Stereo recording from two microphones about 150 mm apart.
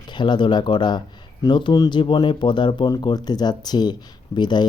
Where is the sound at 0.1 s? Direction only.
30° left (ahead or behind).